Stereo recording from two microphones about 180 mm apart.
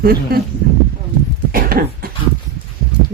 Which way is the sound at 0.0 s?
60° right (ahead or behind).